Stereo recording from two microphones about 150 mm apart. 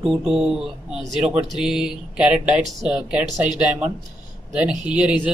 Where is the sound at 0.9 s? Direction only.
Centre (ahead or behind).